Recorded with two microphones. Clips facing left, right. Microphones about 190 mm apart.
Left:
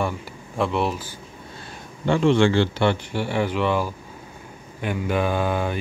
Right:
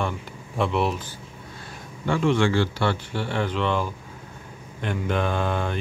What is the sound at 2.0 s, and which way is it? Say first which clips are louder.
Speech: left 4 dB; 25° left (ahead or behind).